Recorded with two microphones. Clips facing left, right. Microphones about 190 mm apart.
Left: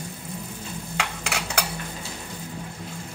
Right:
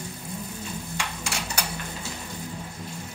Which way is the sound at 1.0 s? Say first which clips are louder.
Left 5 dB; 65° left (ahead or behind).